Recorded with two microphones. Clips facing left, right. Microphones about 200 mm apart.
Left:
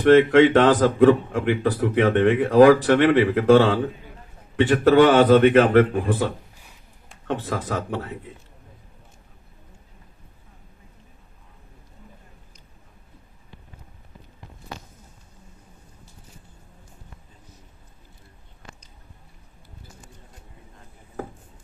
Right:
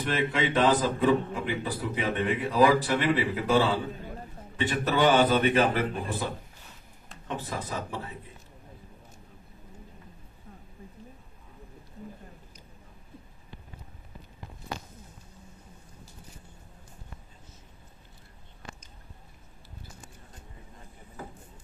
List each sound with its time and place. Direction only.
0.0 s a man's voice: 85° left